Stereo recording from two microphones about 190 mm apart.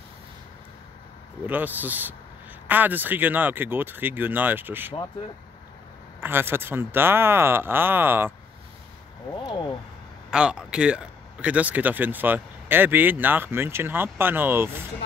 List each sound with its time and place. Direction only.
1.4 s speech: 10° right (ahead or behind)
6.2 s speech: 10° right (ahead or behind)
9.3 s speech: 25° left (ahead or behind)
10.3 s speech: 5° right (ahead or behind)